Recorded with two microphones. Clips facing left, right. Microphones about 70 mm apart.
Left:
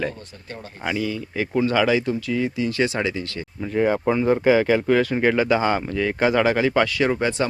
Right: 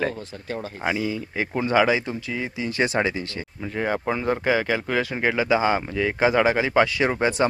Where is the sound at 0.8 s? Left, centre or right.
Right.